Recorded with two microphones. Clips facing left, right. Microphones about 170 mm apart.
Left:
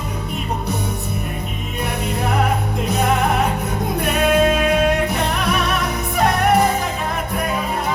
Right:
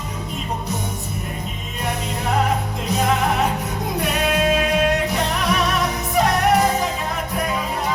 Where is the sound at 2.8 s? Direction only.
60° left (ahead or behind).